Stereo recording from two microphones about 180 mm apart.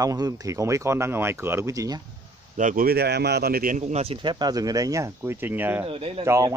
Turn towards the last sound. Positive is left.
turn(degrees=-15)  # may be behind; listen again after turning